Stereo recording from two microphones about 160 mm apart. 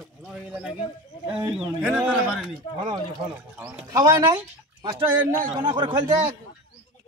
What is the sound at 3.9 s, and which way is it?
A man's voice, 25° right (ahead or behind).